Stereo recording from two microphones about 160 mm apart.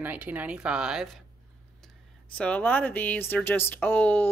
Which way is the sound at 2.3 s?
10° left (ahead or behind).